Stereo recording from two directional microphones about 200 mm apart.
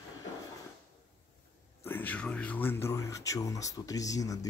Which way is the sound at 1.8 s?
10° left (ahead or behind).